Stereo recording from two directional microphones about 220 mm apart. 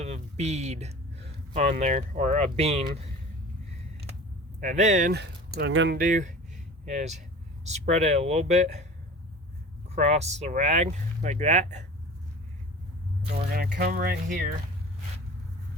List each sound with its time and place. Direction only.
0.0 s speech: 30° right (ahead or behind)
4.6 s speech: 35° right (ahead or behind)
5.2 s speech: 50° right (ahead or behind)
6.0 s speech: 35° right (ahead or behind)
9.9 s speech: 30° right (ahead or behind)
13.5 s speech: 40° right (ahead or behind)